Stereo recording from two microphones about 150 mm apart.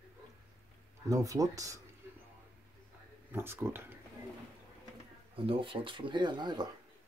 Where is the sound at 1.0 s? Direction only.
25° right (ahead or behind).